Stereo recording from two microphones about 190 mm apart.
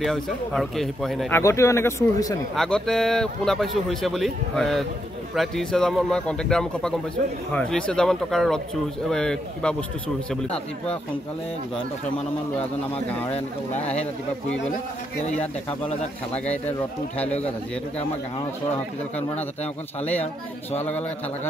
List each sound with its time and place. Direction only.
0.0 s a man's voice: centre (ahead or behind)
1.3 s speech: 15° left (ahead or behind)
2.5 s a man's voice: centre (ahead or behind)
13.3 s speech: 35° left (ahead or behind)